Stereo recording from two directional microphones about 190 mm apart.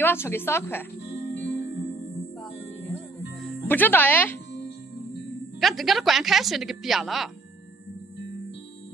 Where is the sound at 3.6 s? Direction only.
10° left (ahead or behind).